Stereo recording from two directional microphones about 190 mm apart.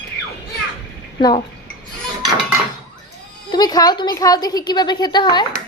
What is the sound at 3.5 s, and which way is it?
A woman's voice, 20° left (ahead or behind).